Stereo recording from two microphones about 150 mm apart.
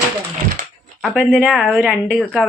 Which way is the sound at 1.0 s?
5° left (ahead or behind).